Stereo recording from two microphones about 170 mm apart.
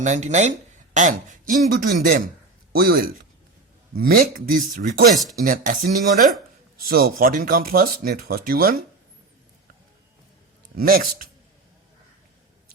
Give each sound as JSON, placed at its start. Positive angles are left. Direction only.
{"t": 0.0, "sound": "a man's voice", "side_deg": -45}
{"t": 5.1, "sound": "speech", "side_deg": 0}
{"t": 5.4, "sound": "a man's voice", "side_deg": -50}
{"t": 6.7, "sound": "speech", "side_deg": -60}
{"t": 10.8, "sound": "speech", "side_deg": -60}